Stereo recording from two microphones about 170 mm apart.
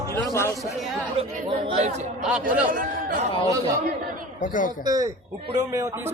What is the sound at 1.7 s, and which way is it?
Speech, 35° right (ahead or behind).